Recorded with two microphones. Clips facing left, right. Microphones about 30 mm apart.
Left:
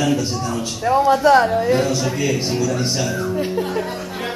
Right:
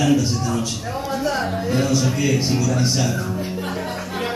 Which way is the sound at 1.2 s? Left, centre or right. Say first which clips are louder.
Left 11 dB; left.